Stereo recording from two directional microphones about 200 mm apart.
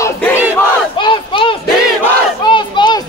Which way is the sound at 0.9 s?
25° left (ahead or behind).